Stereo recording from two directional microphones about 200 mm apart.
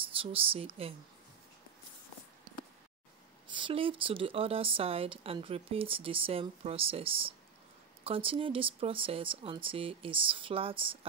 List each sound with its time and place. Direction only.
0.2 s speech: 25° right (ahead or behind)
3.4 s speech: 25° right (ahead or behind)